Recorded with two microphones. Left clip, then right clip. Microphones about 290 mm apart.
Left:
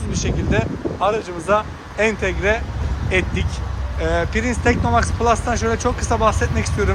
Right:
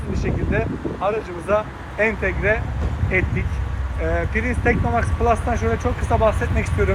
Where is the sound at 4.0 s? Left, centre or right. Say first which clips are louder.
Left 3 dB; centre.